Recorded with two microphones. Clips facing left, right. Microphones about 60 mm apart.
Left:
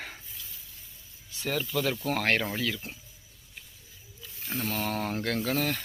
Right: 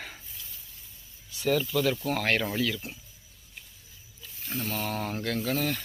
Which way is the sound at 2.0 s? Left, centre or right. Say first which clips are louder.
Even; left.